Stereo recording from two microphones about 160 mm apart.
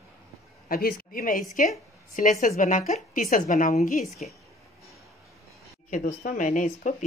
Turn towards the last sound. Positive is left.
turn(degrees=55)  # may be behind; listen again after turning